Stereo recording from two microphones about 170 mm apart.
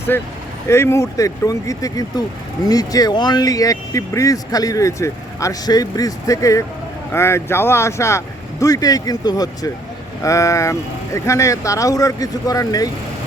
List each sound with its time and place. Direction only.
0.1 s speech: 10° left (ahead or behind)